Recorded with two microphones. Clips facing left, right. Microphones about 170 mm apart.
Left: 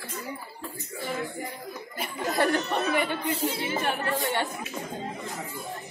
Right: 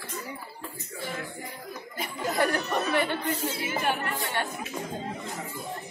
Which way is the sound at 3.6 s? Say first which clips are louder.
Even; 30° left (ahead or behind).